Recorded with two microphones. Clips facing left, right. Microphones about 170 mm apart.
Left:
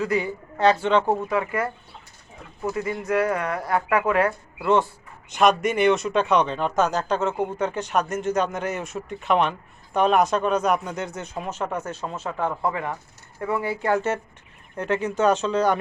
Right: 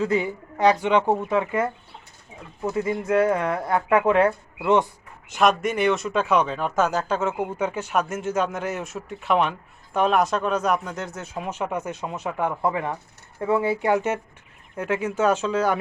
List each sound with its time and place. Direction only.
0.0 s speech: 20° right (ahead or behind)
2.7 s speech: 25° right (ahead or behind)
5.3 s speech: centre (ahead or behind)